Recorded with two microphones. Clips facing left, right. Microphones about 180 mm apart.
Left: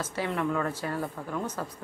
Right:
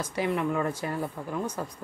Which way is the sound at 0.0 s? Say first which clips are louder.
Right 2 dB; 15° right (ahead or behind).